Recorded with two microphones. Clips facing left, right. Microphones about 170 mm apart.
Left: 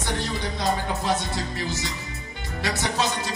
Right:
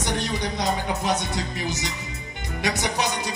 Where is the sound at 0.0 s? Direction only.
20° right (ahead or behind).